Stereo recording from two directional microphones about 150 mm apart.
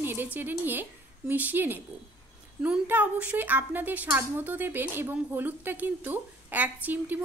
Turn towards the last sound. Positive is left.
turn(degrees=-10)  # may be behind; listen again after turning